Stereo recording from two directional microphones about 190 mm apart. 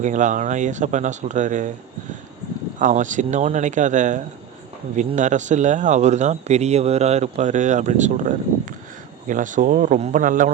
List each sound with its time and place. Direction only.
0.0 s speech: 40° right (ahead or behind)
2.7 s speech: 40° right (ahead or behind)